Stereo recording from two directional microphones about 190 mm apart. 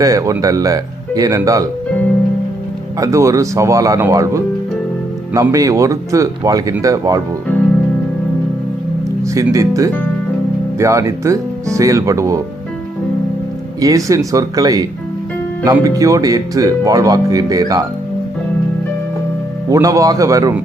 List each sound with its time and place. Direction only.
0.0 s speech: 15° right (ahead or behind)
3.0 s speech: 15° right (ahead or behind)
9.2 s speech: 15° right (ahead or behind)
13.8 s speech: 15° right (ahead or behind)
19.7 s speech: 20° right (ahead or behind)